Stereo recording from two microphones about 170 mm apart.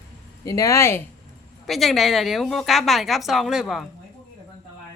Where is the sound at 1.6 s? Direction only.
Centre (ahead or behind).